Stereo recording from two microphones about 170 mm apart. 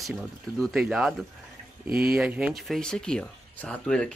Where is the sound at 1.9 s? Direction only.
60° right (ahead or behind).